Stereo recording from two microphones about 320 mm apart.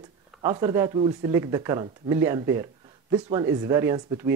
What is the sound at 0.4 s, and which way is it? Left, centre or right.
Speech, centre.